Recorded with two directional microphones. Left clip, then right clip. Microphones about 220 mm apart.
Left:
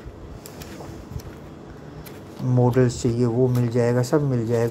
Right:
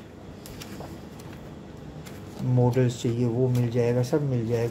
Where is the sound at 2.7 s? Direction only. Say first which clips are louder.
Left 5 dB; 15° left (ahead or behind).